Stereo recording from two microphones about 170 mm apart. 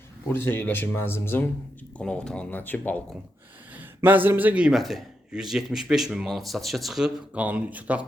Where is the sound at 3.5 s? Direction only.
10° right (ahead or behind).